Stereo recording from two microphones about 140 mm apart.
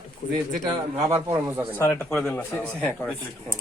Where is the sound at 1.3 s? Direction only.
20° right (ahead or behind).